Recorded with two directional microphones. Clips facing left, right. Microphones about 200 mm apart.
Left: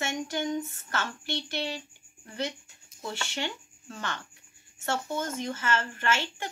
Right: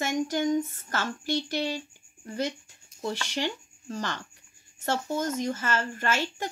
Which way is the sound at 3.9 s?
35° right (ahead or behind).